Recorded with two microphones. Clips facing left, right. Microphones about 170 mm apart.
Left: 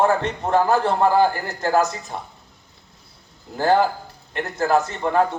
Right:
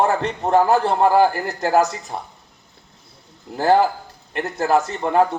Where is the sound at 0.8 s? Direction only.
30° right (ahead or behind).